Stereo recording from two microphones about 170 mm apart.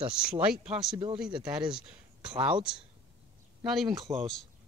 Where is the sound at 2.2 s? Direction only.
5° right (ahead or behind).